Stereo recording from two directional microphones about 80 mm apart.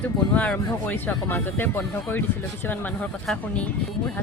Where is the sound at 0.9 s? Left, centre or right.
Left.